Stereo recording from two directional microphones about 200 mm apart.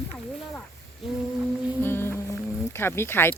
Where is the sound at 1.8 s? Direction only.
10° left (ahead or behind).